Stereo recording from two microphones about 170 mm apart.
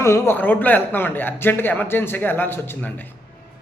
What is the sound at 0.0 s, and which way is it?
A man's voice, 15° left (ahead or behind).